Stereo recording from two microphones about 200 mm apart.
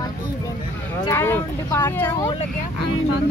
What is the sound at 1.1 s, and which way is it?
Speech, 10° left (ahead or behind).